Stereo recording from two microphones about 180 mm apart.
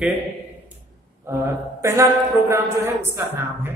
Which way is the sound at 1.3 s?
15° right (ahead or behind).